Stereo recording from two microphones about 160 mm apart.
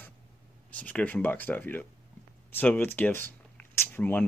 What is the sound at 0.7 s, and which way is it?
Speech, 10° left (ahead or behind).